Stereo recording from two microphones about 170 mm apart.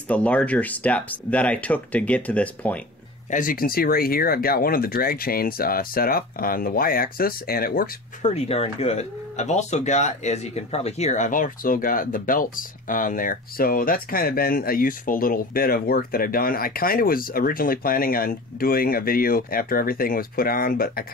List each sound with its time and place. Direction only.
0.1 s speech: 10° left (ahead or behind)
3.3 s speech: 50° left (ahead or behind)
8.2 s speech: 40° left (ahead or behind); by 21.0 s 60° left (ahead or behind)